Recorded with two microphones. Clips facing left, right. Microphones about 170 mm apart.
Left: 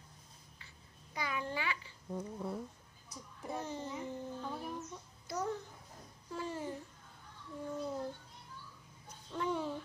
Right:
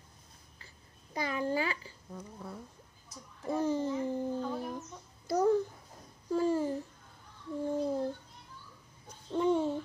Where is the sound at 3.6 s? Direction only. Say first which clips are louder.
Right 13 dB; 35° right (ahead or behind).